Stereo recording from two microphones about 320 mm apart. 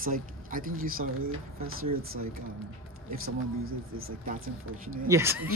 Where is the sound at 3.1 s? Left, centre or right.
Right.